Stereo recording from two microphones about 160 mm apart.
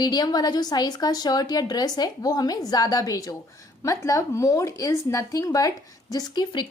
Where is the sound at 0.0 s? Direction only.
25° left (ahead or behind).